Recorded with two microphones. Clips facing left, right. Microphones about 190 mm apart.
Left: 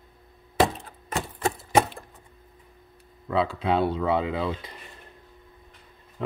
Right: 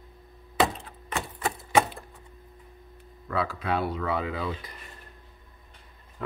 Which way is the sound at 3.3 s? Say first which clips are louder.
Left 4 dB; 25° left (ahead or behind).